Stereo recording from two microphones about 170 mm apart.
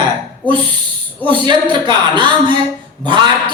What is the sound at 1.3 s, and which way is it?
A woman's voice, 25° right (ahead or behind).